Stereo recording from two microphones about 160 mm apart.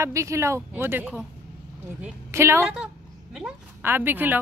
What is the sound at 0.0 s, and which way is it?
A woman's voice, 20° right (ahead or behind).